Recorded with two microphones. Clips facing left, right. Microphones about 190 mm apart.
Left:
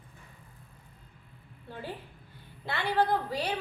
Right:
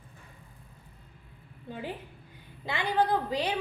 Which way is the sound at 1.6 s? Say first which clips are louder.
Right 3 dB; 15° right (ahead or behind).